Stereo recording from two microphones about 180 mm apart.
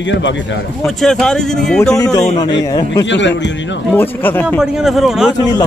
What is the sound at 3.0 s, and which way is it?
Speech, 85° left.